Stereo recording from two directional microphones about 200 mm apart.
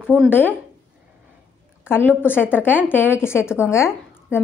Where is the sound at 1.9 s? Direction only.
10° left (ahead or behind).